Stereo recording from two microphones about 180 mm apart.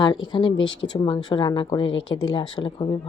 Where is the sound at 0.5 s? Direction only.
90° left.